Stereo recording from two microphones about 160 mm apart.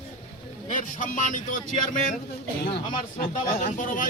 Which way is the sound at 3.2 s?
55° left (ahead or behind).